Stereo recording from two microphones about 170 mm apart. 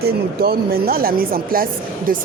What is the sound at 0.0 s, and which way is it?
A woman's voice, 65° right (ahead or behind).